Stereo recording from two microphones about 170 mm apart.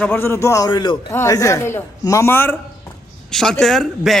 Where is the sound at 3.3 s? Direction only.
Centre (ahead or behind).